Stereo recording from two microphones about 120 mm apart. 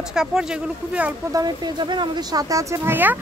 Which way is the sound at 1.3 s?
35° right (ahead or behind).